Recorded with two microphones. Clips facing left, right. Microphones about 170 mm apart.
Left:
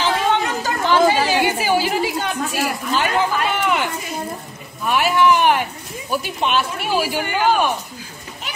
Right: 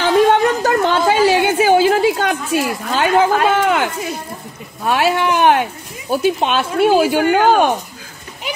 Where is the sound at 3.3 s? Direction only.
85° right.